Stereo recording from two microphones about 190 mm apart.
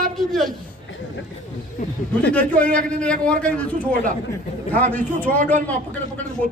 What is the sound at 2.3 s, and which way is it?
A man's voice, 5° left (ahead or behind).